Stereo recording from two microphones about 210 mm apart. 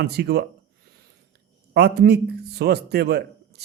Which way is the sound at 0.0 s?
50° right (ahead or behind).